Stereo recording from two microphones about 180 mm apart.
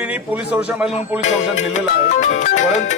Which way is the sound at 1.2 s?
40° left (ahead or behind).